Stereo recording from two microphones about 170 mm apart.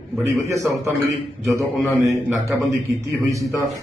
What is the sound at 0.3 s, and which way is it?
Speech, 15° right (ahead or behind).